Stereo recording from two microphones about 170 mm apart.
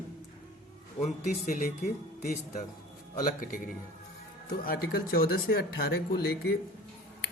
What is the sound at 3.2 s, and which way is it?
Speech, 55° left (ahead or behind).